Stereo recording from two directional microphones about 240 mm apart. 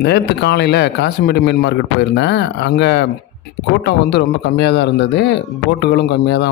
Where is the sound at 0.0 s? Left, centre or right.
Left.